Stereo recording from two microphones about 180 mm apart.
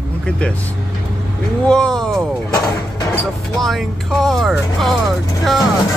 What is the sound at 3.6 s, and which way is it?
Speech, centre (ahead or behind).